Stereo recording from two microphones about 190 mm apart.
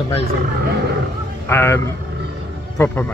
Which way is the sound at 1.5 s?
10° left (ahead or behind).